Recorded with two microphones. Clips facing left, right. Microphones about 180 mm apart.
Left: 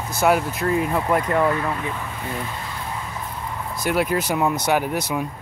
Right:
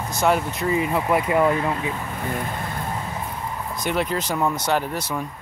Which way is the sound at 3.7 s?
5° left (ahead or behind).